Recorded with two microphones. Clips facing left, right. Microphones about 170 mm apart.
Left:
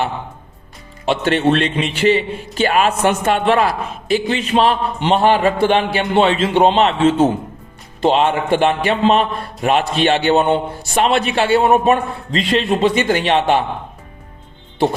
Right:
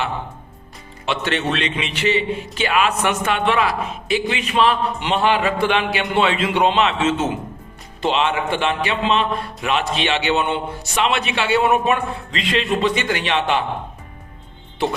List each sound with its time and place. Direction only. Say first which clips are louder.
1.0 s a man's voice: left 7 dB; 45° left (ahead or behind)
2.0 s a man's voice: left 4 dB; 35° left (ahead or behind)